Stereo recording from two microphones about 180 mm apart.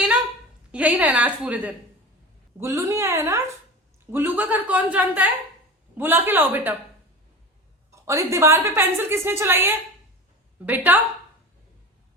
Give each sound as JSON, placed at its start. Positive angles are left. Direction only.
{"t": 0.7, "sound": "a woman's voice", "side_deg": -10}
{"t": 8.0, "sound": "a woman's voice", "side_deg": -15}